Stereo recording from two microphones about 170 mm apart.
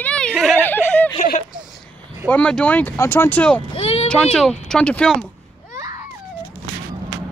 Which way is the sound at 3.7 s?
35° left (ahead or behind).